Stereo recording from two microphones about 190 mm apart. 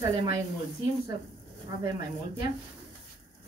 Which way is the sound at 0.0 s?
15° right (ahead or behind).